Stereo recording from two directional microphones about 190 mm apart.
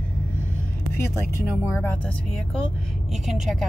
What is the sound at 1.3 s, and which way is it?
Speech, 15° left (ahead or behind).